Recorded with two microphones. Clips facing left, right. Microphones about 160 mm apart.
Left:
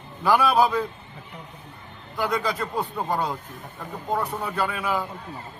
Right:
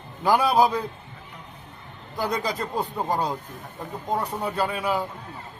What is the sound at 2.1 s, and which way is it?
Speech, 40° right (ahead or behind).